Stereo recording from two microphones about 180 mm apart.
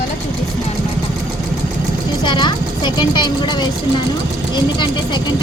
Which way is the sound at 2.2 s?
25° left (ahead or behind).